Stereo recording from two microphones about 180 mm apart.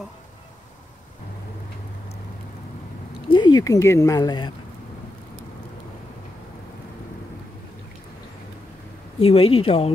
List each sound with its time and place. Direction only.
3.3 s speech: 25° left (ahead or behind)
9.2 s speech: 30° left (ahead or behind)